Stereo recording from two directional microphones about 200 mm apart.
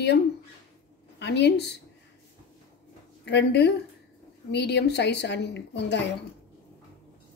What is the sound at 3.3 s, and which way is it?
A woman's voice, 60° left (ahead or behind).